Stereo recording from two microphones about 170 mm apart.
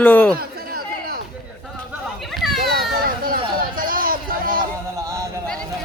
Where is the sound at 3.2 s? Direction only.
60° right (ahead or behind).